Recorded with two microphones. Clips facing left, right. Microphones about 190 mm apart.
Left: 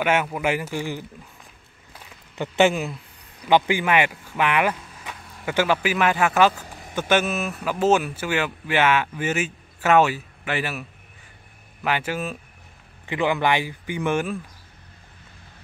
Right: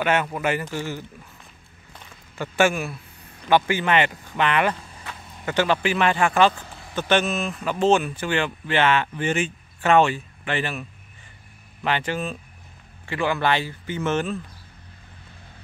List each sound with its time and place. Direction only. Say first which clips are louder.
0.0 s speech: even; 10° left (ahead or behind)
2.3 s speech: left 2 dB; 20° left (ahead or behind)